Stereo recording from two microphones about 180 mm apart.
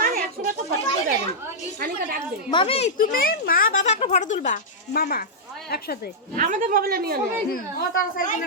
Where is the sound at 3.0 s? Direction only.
50° left (ahead or behind).